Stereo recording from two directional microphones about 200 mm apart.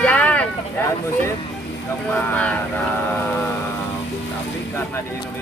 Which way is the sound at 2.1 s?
10° left (ahead or behind).